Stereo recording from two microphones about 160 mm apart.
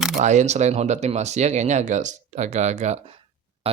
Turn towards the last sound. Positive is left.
turn(degrees=-35)  # may be behind; listen again after turning